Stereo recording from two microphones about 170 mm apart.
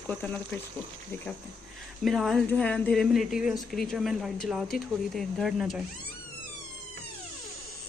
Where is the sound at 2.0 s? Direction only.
Centre (ahead or behind).